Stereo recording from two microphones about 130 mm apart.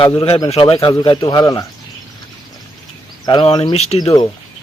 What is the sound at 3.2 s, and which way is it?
Speech, 40° left (ahead or behind).